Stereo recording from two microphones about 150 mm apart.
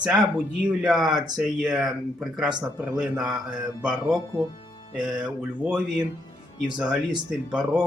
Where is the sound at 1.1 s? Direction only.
25° right (ahead or behind).